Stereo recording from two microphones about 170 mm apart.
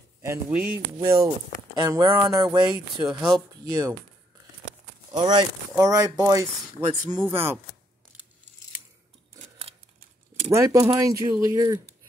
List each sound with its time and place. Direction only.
0.2 s speech: 15° right (ahead or behind)
3.0 s speech: 5° right (ahead or behind)
3.6 s speech: 20° right (ahead or behind)
5.1 s speech: 25° right (ahead or behind)
6.8 s speech: 10° right (ahead or behind)
10.5 s speech: 20° right (ahead or behind)